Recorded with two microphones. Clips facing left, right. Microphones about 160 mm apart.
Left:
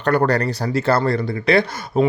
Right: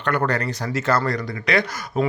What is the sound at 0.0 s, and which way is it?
Speech, 35° left (ahead or behind).